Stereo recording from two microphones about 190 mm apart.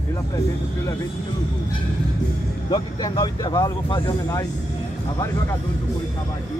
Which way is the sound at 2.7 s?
20° left (ahead or behind).